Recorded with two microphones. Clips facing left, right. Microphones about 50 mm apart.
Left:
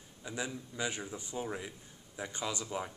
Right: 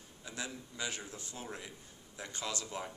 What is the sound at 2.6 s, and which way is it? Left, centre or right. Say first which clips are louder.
Speech: left 3 dB; centre.